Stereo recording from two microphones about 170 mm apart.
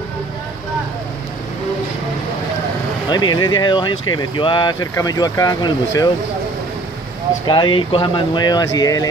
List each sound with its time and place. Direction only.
3.1 s speech: 25° left (ahead or behind)
7.4 s speech: 30° left (ahead or behind)